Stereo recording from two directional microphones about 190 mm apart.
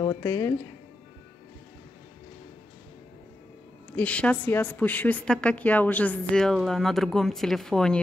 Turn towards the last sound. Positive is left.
turn(degrees=0)  # may be behind; listen again after turning